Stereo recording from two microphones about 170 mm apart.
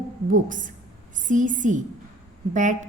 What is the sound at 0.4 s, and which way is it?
A woman's voice, 50° right (ahead or behind).